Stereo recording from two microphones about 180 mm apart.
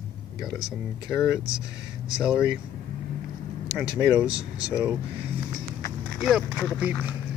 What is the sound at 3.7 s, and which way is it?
Speech, 5° right (ahead or behind).